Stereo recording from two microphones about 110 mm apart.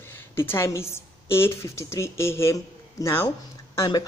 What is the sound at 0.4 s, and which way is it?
A woman's voice, 25° left (ahead or behind).